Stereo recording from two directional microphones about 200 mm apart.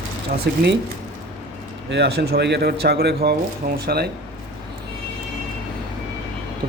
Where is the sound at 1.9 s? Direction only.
55° right (ahead or behind).